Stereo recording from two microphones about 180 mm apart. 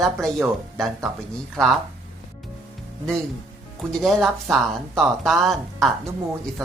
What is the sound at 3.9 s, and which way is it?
Speech, centre (ahead or behind).